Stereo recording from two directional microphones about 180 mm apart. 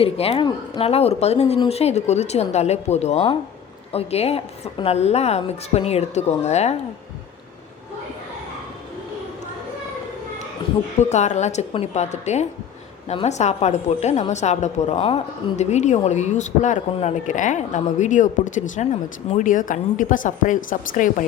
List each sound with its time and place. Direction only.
0.0 s a woman's voice: 35° left (ahead or behind)
11.1 s a woman's voice: 40° left (ahead or behind)